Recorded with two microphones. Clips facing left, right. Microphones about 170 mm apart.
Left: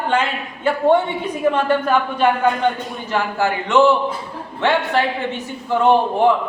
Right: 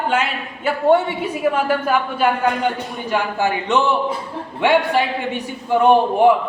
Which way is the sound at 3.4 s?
20° right (ahead or behind).